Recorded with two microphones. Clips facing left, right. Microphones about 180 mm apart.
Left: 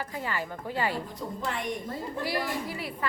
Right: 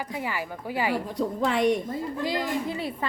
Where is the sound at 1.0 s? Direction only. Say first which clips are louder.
Right 8 dB; 75° right (ahead or behind).